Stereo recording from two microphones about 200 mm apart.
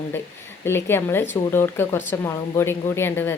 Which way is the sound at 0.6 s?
10° left (ahead or behind).